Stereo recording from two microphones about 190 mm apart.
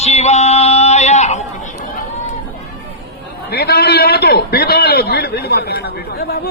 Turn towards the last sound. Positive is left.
turn(degrees=55)  # may be behind; listen again after turning